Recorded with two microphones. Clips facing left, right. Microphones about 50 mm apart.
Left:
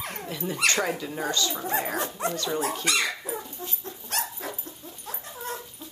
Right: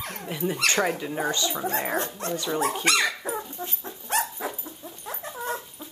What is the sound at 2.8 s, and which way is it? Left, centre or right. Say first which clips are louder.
Speech: right 3 dB; right.